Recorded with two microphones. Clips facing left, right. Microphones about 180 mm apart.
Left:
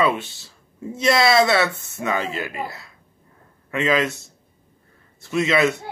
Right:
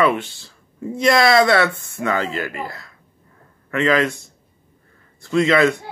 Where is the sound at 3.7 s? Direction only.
20° left (ahead or behind).